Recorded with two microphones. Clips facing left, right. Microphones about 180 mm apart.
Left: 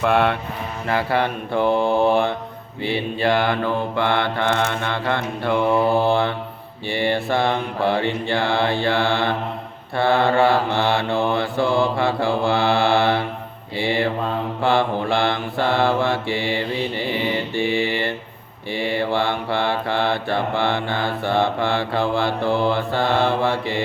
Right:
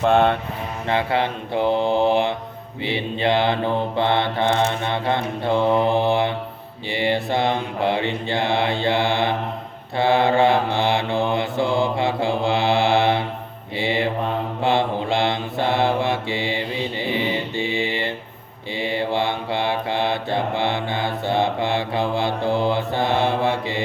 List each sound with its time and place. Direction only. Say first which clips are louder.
0.0 s mantra: right 2 dB; 25° right (ahead or behind)